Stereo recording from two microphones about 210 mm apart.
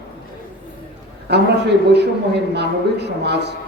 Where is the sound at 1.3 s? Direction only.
55° right (ahead or behind).